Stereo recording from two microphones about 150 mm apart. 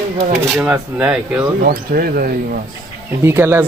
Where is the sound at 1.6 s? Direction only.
80° right.